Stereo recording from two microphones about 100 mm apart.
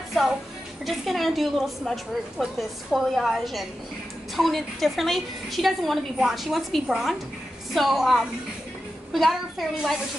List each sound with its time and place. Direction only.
0.8 s a woman's voice: centre (ahead or behind)